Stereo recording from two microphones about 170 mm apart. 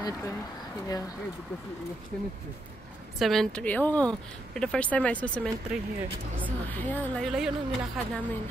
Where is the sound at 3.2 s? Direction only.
Centre (ahead or behind).